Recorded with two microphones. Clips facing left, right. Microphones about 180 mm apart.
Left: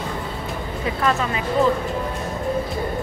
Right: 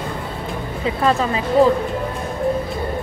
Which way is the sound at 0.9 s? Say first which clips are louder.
Right 4 dB; 30° right (ahead or behind).